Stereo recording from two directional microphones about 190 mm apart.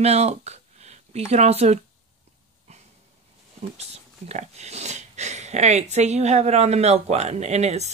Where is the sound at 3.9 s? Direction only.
35° right (ahead or behind).